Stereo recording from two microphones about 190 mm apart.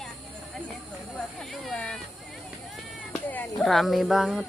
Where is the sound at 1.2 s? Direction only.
Centre (ahead or behind).